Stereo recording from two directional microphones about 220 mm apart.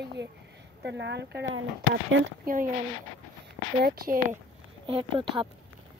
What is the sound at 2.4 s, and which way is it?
Speech, 35° right (ahead or behind).